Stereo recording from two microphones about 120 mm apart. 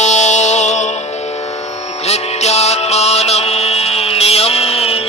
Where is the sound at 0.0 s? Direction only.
75° left (ahead or behind).